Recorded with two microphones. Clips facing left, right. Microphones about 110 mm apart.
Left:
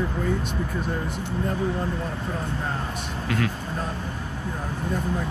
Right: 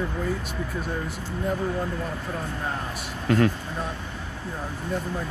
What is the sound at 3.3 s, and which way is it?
Speech, 40° right (ahead or behind).